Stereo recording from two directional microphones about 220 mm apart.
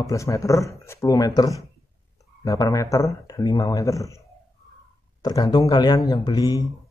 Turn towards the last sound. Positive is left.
turn(degrees=15)  # may be behind; listen again after turning